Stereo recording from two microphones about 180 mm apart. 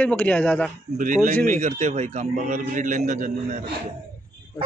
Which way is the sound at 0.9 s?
45° right (ahead or behind).